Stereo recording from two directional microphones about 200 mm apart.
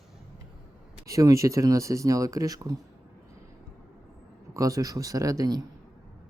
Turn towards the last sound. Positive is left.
turn(degrees=-20)  # may be behind; listen again after turning